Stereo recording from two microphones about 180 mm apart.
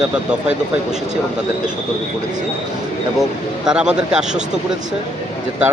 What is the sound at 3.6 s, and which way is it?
Speech, 5° right (ahead or behind).